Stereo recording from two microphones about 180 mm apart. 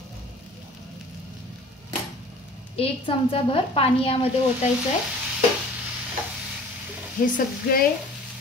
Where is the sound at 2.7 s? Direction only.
30° left (ahead or behind).